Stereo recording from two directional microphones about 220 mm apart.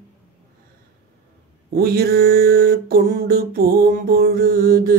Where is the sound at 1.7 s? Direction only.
45° right (ahead or behind).